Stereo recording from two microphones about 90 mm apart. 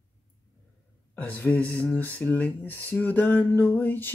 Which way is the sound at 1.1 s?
20° left (ahead or behind).